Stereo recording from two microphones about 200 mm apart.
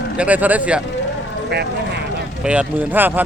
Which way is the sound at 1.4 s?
55° right (ahead or behind).